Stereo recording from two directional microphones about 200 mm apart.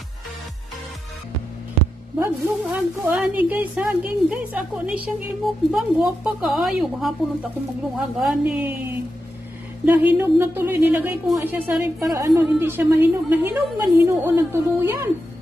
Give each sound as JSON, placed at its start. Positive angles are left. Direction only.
{"t": 2.1, "sound": "a woman's voice", "side_deg": -10}
{"t": 8.2, "sound": "a woman's voice", "side_deg": -5}
{"t": 9.8, "sound": "a woman's voice", "side_deg": -10}